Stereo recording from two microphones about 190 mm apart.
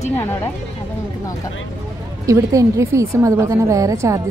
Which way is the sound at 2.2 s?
15° right (ahead or behind).